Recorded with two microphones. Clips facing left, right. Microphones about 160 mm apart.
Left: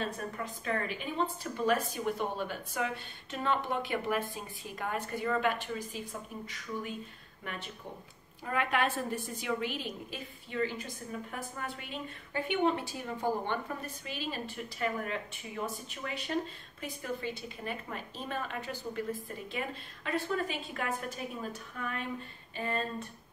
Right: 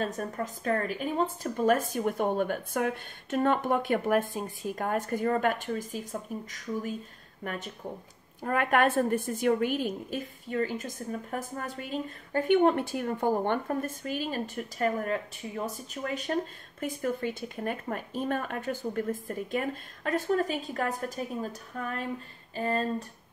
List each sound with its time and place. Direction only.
0.0 s a woman's voice: 45° right (ahead or behind)